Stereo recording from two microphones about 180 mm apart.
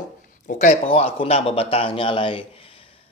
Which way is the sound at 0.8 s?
35° left (ahead or behind).